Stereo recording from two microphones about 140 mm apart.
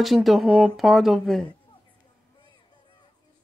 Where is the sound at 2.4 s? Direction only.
35° left (ahead or behind).